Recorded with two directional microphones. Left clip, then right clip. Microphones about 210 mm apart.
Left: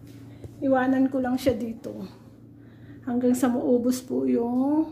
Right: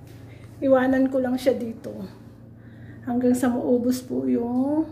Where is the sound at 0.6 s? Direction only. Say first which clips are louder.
Right 3 dB; centre (ahead or behind); by 4.9 s 25° left (ahead or behind).